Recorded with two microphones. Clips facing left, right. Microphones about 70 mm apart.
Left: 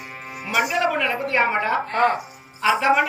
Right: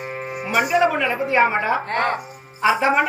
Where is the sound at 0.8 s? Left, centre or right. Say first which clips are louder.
Right 3 dB; centre.